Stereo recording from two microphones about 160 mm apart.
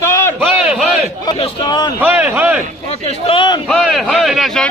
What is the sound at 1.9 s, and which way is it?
Speech, 10° right (ahead or behind).